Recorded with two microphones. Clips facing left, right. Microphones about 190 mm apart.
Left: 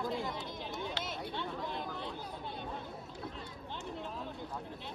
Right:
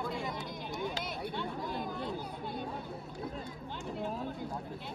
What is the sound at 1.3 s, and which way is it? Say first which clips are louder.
Chatter: right 2 dB; 5° right (ahead or behind).